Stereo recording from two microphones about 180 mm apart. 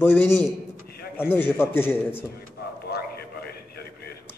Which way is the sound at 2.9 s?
60° left (ahead or behind).